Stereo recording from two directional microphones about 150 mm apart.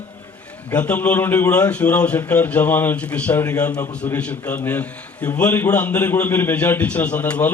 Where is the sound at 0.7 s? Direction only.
10° left (ahead or behind).